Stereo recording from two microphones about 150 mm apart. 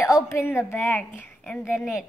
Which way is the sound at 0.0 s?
20° left (ahead or behind).